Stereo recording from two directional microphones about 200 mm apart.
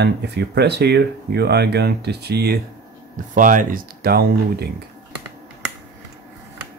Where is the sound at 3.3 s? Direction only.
40° right (ahead or behind).